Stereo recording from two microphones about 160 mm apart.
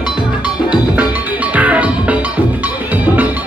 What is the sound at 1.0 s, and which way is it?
Music, 10° right (ahead or behind).